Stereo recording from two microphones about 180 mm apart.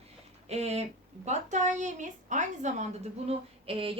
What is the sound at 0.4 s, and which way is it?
A woman's voice, 35° right (ahead or behind).